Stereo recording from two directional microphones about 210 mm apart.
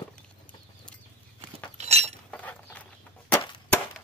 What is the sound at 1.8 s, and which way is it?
Chink, 30° right (ahead or behind).